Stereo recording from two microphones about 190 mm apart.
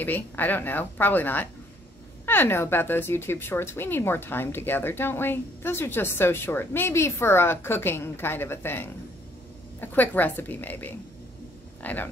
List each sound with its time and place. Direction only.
0.0 s speech: 10° left (ahead or behind)